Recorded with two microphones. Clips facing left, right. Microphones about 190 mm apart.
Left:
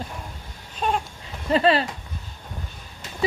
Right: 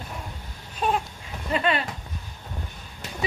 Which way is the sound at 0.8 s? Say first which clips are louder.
Even; 5° right (ahead or behind).